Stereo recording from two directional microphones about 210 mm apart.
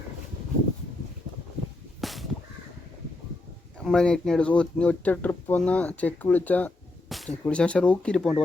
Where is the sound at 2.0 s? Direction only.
Centre (ahead or behind).